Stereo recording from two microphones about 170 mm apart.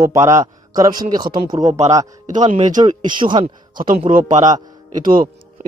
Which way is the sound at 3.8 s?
55° right (ahead or behind).